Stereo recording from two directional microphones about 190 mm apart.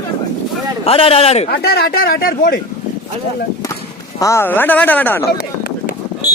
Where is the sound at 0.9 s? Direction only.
30° left (ahead or behind).